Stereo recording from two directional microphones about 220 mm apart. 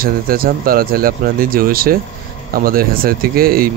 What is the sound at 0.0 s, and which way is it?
Speech, 40° right (ahead or behind).